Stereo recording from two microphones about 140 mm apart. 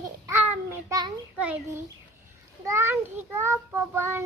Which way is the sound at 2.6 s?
20° right (ahead or behind).